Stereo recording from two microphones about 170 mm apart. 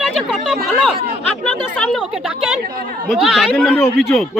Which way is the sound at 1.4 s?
5° left (ahead or behind).